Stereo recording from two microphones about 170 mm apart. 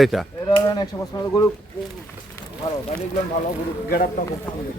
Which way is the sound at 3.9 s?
55° left (ahead or behind).